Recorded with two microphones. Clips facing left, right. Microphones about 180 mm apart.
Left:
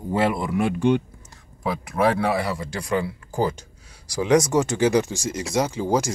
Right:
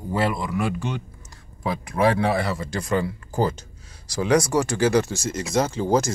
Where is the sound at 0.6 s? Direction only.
55° left (ahead or behind).